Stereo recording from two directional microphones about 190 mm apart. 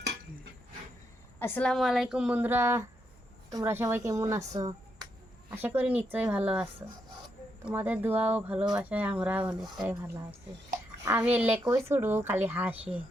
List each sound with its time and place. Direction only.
1.4 s a woman's voice: 10° left (ahead or behind); by 13.0 s 5° right (ahead or behind)